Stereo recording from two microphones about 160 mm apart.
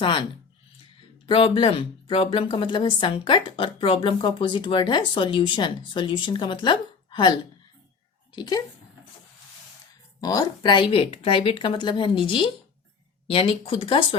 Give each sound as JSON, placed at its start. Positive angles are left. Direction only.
{"t": 0.0, "sound": "speech", "side_deg": 30}
{"t": 1.3, "sound": "speech", "side_deg": 35}
{"t": 8.4, "sound": "speech", "side_deg": 25}
{"t": 10.2, "sound": "speech", "side_deg": 25}